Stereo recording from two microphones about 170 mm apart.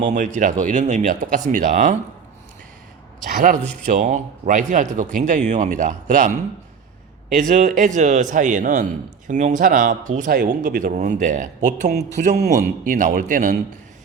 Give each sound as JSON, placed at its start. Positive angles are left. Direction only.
{"t": 0.0, "sound": "a man's voice", "side_deg": -45}
{"t": 3.2, "sound": "a man's voice", "side_deg": -50}
{"t": 10.2, "sound": "a man's voice", "side_deg": -65}